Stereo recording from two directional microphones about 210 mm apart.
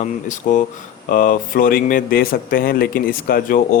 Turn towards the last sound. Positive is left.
turn(degrees=45)  # may be behind; listen again after turning